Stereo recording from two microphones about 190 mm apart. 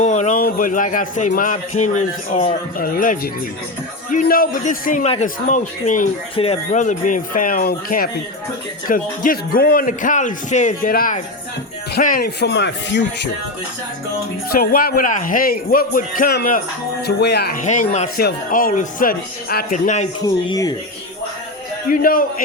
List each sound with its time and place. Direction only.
0.0 s speech: 40° left (ahead or behind)
6.3 s speech: 30° left (ahead or behind)
6.7 s speech: 40° left (ahead or behind); by 13.3 s 65° left (ahead or behind)
14.5 s speech: 50° left (ahead or behind)
17.6 s speech: 40° left (ahead or behind)
18.2 s speech: 50° left (ahead or behind)
20.2 s speech: 20° left (ahead or behind)
22.0 s speech: 50° left (ahead or behind)